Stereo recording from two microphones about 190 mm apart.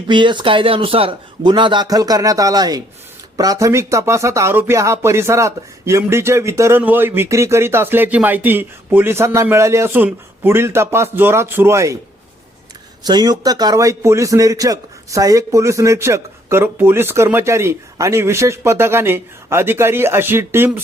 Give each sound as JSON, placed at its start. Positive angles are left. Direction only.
{"t": 0.1, "sound": "a man's voice", "side_deg": -25}
{"t": 13.1, "sound": "speech", "side_deg": -20}